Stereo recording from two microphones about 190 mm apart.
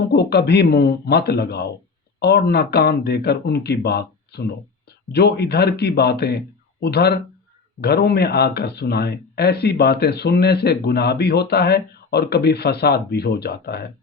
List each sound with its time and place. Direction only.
0.1 s speech: 60° left (ahead or behind)